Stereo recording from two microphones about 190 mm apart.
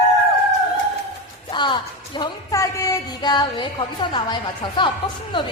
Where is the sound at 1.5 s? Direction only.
25° left (ahead or behind).